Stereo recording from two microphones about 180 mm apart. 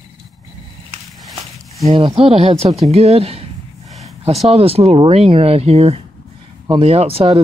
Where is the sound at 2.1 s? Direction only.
30° right (ahead or behind).